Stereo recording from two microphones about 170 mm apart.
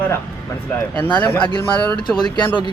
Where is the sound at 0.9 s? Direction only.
10° left (ahead or behind).